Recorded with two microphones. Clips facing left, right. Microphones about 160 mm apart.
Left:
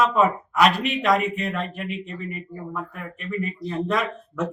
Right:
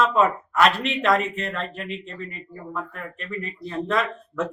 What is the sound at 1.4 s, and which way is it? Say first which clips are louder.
A man's voice: left 2 dB; 5° left (ahead or behind).